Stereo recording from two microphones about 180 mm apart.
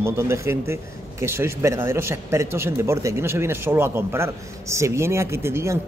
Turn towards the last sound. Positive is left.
turn(degrees=-15)  # may be behind; listen again after turning